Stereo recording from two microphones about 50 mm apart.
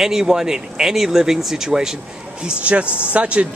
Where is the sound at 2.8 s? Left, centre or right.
Left.